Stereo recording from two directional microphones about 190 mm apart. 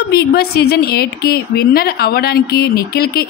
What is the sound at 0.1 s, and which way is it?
A woman's voice, 55° left (ahead or behind).